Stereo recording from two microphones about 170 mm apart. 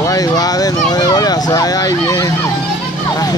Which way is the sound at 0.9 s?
20° left (ahead or behind).